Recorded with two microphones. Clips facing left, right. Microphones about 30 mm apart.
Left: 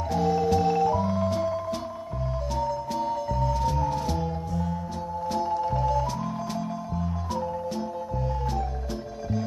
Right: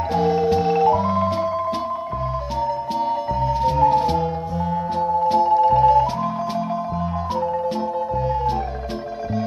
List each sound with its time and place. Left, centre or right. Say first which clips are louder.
0.1 s music: right 5 dB; right